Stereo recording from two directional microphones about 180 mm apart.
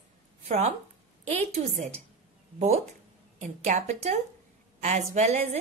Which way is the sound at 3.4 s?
45° right (ahead or behind).